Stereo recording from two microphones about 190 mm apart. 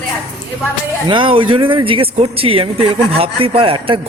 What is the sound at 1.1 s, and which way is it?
Speech, 25° right (ahead or behind).